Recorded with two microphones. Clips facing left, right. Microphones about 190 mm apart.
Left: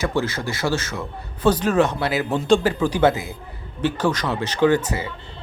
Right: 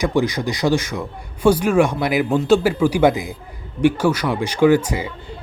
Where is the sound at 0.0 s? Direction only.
15° right (ahead or behind).